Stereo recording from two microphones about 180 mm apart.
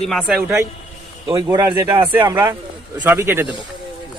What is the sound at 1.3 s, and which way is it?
Speech, 20° right (ahead or behind).